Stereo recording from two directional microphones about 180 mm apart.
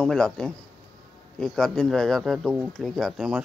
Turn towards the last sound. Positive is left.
turn(degrees=0)  # may be behind; listen again after turning